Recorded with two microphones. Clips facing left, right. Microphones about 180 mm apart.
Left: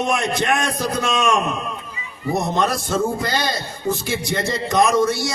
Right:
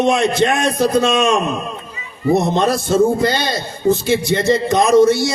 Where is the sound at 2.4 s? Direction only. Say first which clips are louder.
Right 2 dB; 25° right (ahead or behind).